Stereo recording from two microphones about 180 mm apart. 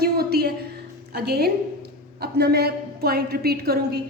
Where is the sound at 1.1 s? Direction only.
65° right (ahead or behind).